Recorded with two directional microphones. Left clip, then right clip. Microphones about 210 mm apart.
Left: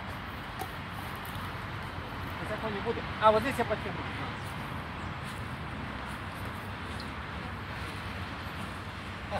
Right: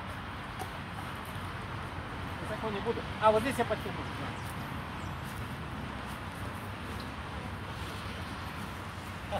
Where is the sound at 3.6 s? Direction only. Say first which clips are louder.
Left 1 dB; 5° right (ahead or behind).